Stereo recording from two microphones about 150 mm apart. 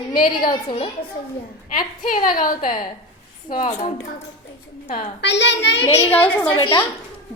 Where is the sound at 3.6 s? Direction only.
40° left (ahead or behind).